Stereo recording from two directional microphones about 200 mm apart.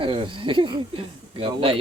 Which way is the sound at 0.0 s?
25° right (ahead or behind).